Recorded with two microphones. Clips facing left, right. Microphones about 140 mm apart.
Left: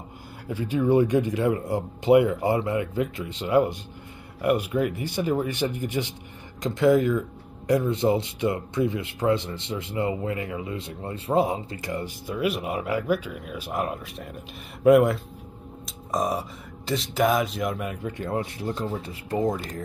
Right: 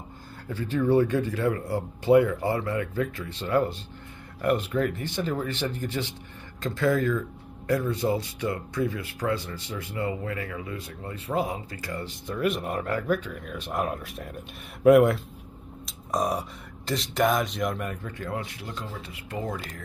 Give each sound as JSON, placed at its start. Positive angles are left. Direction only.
{"t": 0.5, "sound": "speech", "side_deg": 10}
{"t": 12.3, "sound": "speech", "side_deg": 5}
{"t": 18.3, "sound": "speech", "side_deg": 30}